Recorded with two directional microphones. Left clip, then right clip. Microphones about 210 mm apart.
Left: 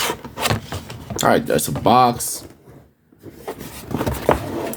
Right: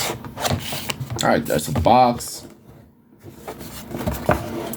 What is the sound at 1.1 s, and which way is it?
Speech, 35° left (ahead or behind).